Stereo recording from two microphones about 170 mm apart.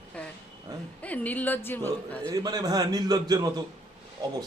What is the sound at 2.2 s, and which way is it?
A man's voice, 20° right (ahead or behind).